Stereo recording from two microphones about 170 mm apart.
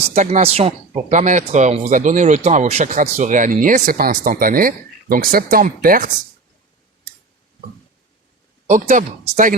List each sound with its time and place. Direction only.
0.1 s speech: 45° right (ahead or behind)
8.6 s speech: 45° right (ahead or behind)